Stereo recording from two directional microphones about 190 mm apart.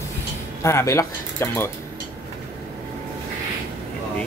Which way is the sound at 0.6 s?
15° left (ahead or behind).